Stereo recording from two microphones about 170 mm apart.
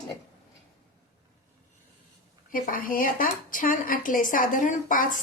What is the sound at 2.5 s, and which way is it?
Speech, 55° left (ahead or behind).